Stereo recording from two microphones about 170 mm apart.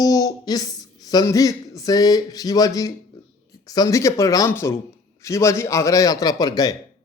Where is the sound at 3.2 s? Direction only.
20° left (ahead or behind).